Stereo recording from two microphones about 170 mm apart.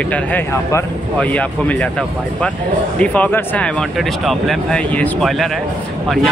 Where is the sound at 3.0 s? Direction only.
10° left (ahead or behind).